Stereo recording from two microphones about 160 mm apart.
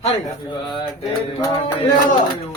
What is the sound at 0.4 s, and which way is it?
Speech, 30° left (ahead or behind).